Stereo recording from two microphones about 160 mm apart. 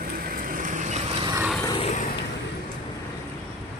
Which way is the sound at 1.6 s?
35° left (ahead or behind).